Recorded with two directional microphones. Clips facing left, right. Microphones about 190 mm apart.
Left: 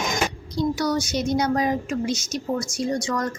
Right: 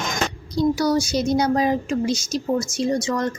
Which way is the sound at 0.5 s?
35° right (ahead or behind).